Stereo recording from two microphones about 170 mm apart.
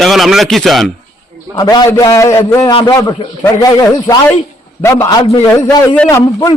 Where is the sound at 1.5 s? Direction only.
25° left (ahead or behind).